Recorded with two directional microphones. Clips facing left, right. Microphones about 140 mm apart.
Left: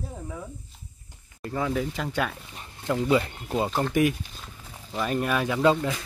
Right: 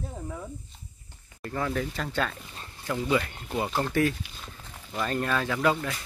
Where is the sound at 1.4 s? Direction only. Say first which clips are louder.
Left 2 dB; 10° left (ahead or behind).